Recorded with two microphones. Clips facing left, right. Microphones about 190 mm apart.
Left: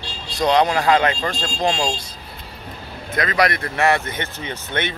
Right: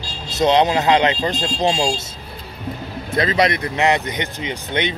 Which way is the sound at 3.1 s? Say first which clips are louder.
Right 2 dB; 30° right (ahead or behind).